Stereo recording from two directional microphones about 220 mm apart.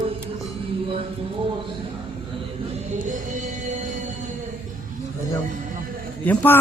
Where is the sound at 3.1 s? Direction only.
35° right (ahead or behind).